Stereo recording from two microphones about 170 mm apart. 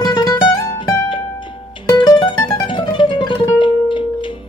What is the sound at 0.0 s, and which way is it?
Music, 25° left (ahead or behind).